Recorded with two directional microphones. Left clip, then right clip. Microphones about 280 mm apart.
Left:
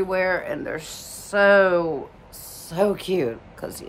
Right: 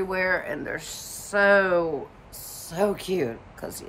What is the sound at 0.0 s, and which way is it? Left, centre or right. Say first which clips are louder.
Speech: left 3 dB; centre.